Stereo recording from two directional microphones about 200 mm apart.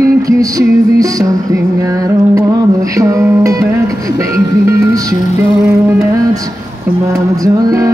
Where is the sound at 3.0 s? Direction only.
15° right (ahead or behind).